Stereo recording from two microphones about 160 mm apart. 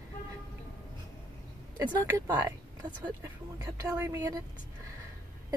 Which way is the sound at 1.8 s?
25° right (ahead or behind).